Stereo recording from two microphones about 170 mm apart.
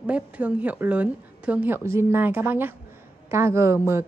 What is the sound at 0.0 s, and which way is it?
A woman's voice, 5° right (ahead or behind).